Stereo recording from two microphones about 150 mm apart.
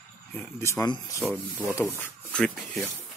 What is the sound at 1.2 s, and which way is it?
Speech, 5° left (ahead or behind).